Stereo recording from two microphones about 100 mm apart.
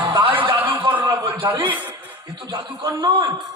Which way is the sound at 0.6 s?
20° right (ahead or behind).